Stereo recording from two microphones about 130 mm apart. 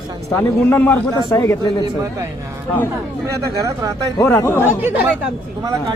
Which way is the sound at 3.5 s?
25° right (ahead or behind).